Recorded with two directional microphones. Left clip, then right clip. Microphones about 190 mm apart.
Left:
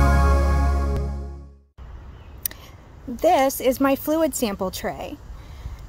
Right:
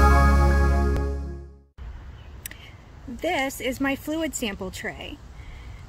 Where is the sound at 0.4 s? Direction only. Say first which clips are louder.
Right 1 dB; 15° right (ahead or behind).